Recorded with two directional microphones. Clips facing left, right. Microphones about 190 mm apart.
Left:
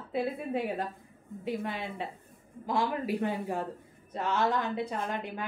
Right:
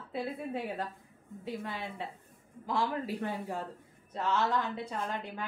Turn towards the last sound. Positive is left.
turn(degrees=15)  # may be behind; listen again after turning